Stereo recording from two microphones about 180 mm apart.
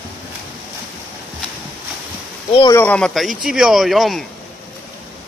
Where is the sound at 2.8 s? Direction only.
5° left (ahead or behind).